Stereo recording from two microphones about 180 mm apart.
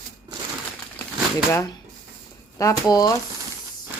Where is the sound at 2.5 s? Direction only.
20° left (ahead or behind).